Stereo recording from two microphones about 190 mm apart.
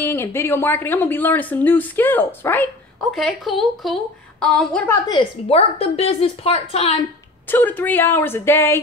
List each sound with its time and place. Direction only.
0.0 s speech: 10° left (ahead or behind)
3.0 s a woman's voice: centre (ahead or behind)
5.1 s speech: 30° left (ahead or behind)
7.4 s speech: 10° left (ahead or behind)